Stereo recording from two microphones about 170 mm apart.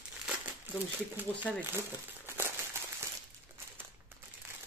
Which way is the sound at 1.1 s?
10° right (ahead or behind).